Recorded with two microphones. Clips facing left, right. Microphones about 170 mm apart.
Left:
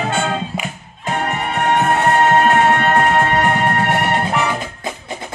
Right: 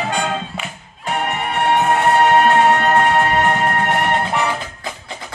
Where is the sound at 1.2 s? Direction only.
5° right (ahead or behind).